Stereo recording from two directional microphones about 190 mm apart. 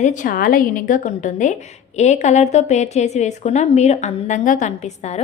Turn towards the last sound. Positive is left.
turn(degrees=35)  # may be behind; listen again after turning